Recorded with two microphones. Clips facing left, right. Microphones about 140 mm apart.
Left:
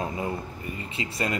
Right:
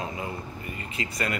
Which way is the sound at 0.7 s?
30° left (ahead or behind).